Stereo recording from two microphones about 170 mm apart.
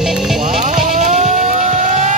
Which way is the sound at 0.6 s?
45° right (ahead or behind).